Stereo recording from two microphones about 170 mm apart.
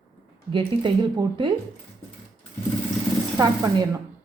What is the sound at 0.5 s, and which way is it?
A woman's voice, 30° right (ahead or behind).